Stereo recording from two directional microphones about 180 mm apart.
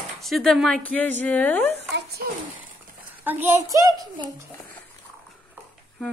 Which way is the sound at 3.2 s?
15° right (ahead or behind).